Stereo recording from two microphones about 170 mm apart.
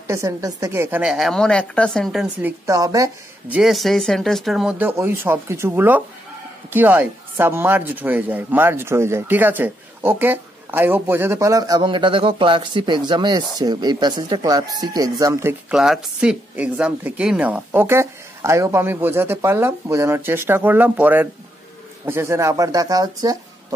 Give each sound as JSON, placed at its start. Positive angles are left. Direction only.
{"t": 0.0, "sound": "a woman's voice", "side_deg": -15}
{"t": 2.2, "sound": "speech", "side_deg": -15}
{"t": 3.4, "sound": "speech", "side_deg": -5}
{"t": 15.7, "sound": "speech", "side_deg": -5}